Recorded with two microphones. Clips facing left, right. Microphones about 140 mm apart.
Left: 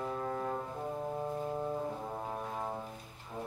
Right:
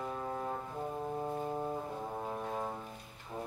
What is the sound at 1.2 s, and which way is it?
Music, 15° right (ahead or behind).